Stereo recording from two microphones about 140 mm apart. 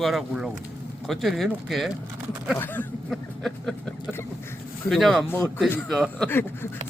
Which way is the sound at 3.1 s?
Centre (ahead or behind).